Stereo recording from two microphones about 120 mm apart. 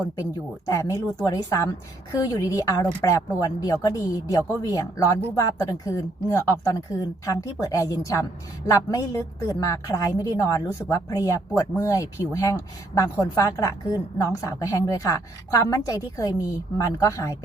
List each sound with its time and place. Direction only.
0.7 s a woman's voice: 25° left (ahead or behind)